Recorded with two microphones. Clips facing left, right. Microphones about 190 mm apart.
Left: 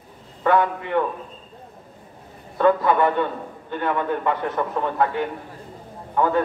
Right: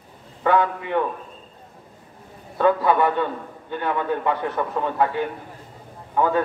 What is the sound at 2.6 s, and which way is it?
A man's voice, 15° right (ahead or behind).